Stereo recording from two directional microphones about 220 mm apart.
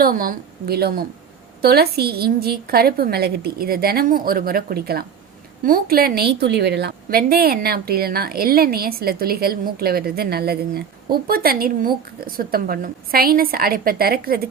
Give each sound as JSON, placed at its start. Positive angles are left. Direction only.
{"t": 0.0, "sound": "a woman's voice", "side_deg": -40}